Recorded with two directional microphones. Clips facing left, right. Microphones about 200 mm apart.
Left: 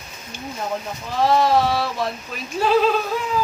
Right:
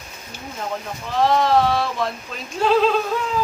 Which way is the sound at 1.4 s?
5° left (ahead or behind).